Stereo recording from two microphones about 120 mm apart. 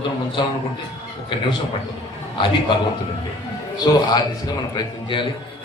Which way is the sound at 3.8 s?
35° left (ahead or behind).